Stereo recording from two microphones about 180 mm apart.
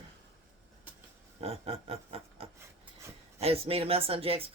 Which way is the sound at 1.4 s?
35° right (ahead or behind).